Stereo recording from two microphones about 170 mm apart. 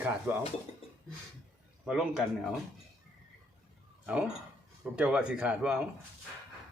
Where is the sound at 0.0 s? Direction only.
10° right (ahead or behind).